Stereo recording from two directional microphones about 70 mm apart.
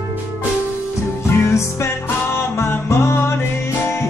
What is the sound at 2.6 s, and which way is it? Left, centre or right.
Music, left.